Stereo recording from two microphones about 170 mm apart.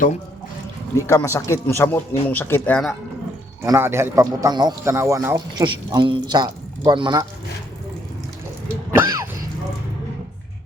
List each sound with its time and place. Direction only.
0.9 s speech: 20° left (ahead or behind)
3.6 s speech: 15° right (ahead or behind)
5.6 s a man's voice: 30° right (ahead or behind)
9.0 s a sound: 10° right (ahead or behind)